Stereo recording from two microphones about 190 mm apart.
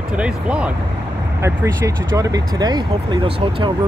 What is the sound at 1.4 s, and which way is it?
Speech, 15° right (ahead or behind).